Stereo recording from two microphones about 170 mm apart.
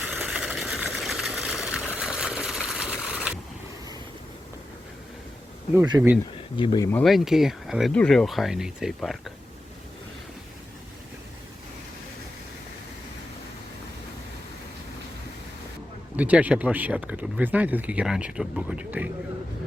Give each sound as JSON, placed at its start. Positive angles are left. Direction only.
{"t": 0.1, "sound": "vehicle", "side_deg": -10}
{"t": 6.0, "sound": "speech", "side_deg": -10}
{"t": 6.6, "sound": "speech", "side_deg": 25}
{"t": 7.0, "sound": "speech", "side_deg": 0}
{"t": 16.1, "sound": "speech", "side_deg": -10}